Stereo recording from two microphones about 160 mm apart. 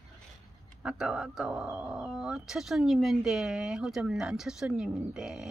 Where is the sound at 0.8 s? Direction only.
5° right (ahead or behind).